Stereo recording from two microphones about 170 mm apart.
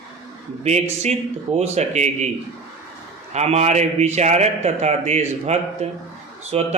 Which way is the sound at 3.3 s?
40° right (ahead or behind).